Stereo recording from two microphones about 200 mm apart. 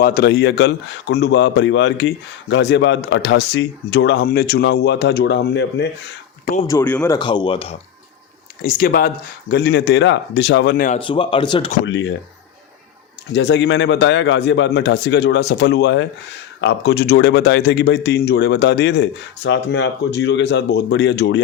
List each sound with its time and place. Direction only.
0.0 s speech: 50° left (ahead or behind)
6.7 s speech: 10° left (ahead or behind)
7.2 s speech: 25° left (ahead or behind)
8.6 s speech: 50° left (ahead or behind)
11.0 s speech: 25° left (ahead or behind)
11.9 s speech: 65° left (ahead or behind)
13.3 s speech: 65° left (ahead or behind)